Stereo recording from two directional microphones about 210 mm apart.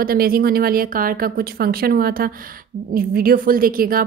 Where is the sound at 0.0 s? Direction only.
45° right (ahead or behind).